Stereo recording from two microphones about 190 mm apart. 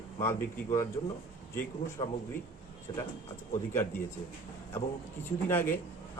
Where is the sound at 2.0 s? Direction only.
30° left (ahead or behind).